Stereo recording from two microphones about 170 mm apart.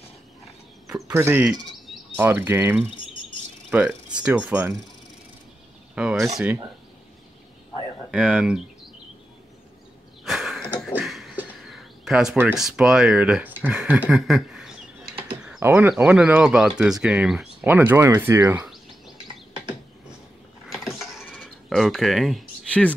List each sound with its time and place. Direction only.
1.1 s speech: 10° right (ahead or behind)
5.9 s speech: 5° right (ahead or behind)
8.1 s speech: 5° right (ahead or behind)
10.2 s a sound: centre (ahead or behind)
11.0 s speech: centre (ahead or behind); by 18.7 s 15° right (ahead or behind)
18.7 s bird: centre (ahead or behind)
20.6 s a sound: centre (ahead or behind)